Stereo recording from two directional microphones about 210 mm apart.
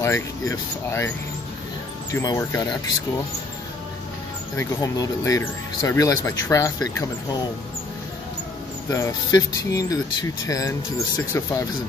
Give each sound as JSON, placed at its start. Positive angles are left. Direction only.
{"t": 0.0, "sound": "speech", "side_deg": 15}
{"t": 2.1, "sound": "speech", "side_deg": 15}
{"t": 4.6, "sound": "speech", "side_deg": 15}
{"t": 8.9, "sound": "speech", "side_deg": 15}